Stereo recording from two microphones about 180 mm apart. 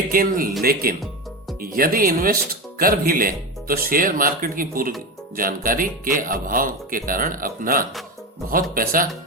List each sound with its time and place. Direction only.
0.1 s speech: 50° right (ahead or behind)